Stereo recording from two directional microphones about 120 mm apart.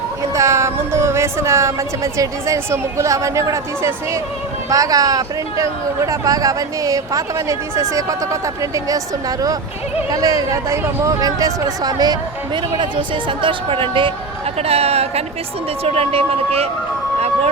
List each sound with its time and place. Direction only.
0.3 s music: 25° right (ahead or behind)
2.1 s speech: 25° right (ahead or behind)
10.1 s speech: 30° right (ahead or behind); by 14.1 s 45° right (ahead or behind)
14.6 s speech: 55° right (ahead or behind)
17.2 s music: 60° right (ahead or behind)